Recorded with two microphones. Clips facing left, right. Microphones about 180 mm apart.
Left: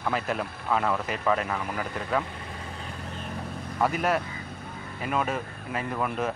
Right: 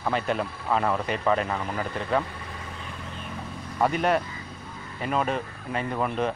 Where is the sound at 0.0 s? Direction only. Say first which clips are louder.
Right 2 dB; centre (ahead or behind).